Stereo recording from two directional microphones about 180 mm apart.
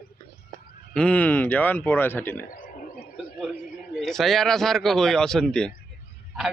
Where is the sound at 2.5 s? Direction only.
50° left (ahead or behind).